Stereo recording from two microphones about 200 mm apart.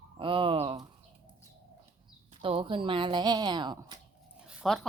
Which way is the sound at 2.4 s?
25° right (ahead or behind).